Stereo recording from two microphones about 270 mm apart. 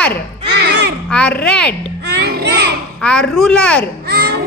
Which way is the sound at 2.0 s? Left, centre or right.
Right.